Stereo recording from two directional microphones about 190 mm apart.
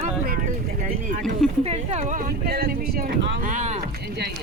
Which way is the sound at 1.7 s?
35° right (ahead or behind).